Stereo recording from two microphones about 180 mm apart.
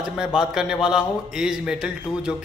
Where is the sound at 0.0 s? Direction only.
5° right (ahead or behind).